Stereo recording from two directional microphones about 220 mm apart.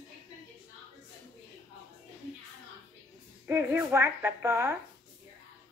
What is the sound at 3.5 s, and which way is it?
A woman's voice, 10° right (ahead or behind).